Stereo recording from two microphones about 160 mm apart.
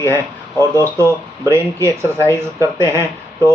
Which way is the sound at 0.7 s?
15° right (ahead or behind).